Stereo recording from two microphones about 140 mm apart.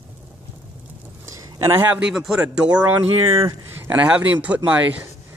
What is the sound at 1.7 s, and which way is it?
Speech, 20° right (ahead or behind).